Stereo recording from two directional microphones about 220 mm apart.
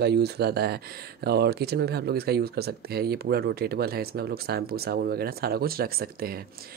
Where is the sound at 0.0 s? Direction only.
50° right (ahead or behind).